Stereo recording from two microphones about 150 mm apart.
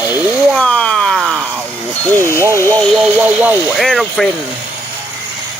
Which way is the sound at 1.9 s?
10° left (ahead or behind).